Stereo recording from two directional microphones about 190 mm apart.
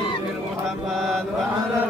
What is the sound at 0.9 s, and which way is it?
Mantra, centre (ahead or behind).